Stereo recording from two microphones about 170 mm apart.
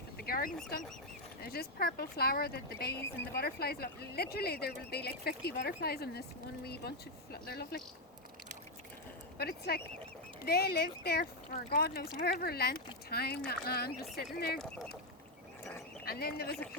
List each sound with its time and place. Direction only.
0.2 s fowl: 60° left (ahead or behind)
1.4 s speech: 65° left (ahead or behind)
3.0 s speech: 15° left (ahead or behind)
3.3 s speech: 65° left (ahead or behind)
7.4 s speech: 65° left (ahead or behind)
9.4 s speech: 65° left (ahead or behind)
16.0 s speech: 65° left (ahead or behind)